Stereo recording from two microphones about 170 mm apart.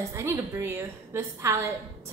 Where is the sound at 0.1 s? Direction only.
15° right (ahead or behind).